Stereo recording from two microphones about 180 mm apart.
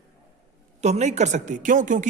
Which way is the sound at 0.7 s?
40° right (ahead or behind).